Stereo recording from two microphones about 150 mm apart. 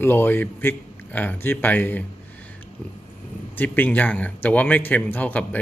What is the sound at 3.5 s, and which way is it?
Speech, 10° left (ahead or behind).